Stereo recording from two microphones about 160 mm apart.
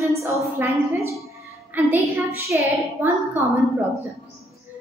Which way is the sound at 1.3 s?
10° right (ahead or behind).